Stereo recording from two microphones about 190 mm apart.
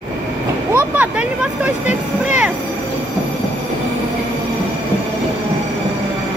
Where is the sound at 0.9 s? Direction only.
5° right (ahead or behind).